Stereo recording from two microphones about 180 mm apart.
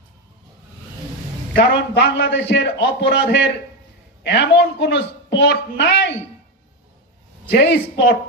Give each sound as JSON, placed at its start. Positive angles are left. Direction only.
{"t": 1.5, "sound": "a man's voice", "side_deg": 65}
{"t": 7.4, "sound": "a woman's voice", "side_deg": 80}